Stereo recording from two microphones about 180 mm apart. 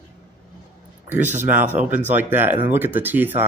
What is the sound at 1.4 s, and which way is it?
Speech, 10° right (ahead or behind).